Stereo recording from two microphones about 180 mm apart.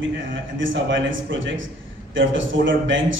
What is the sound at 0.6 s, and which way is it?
A man's voice, 90° right.